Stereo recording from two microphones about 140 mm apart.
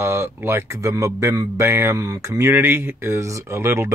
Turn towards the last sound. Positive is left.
turn(degrees=-20)  # may be behind; listen again after turning